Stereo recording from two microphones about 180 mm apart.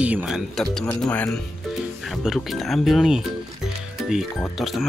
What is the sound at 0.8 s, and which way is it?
Speech, 15° left (ahead or behind).